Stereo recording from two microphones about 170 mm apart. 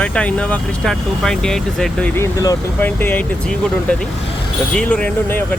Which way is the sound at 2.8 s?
10° left (ahead or behind).